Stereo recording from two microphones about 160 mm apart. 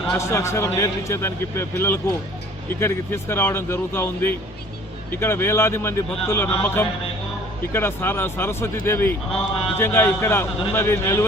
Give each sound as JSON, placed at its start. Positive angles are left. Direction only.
{"t": 0.2, "sound": "a man's voice", "side_deg": 15}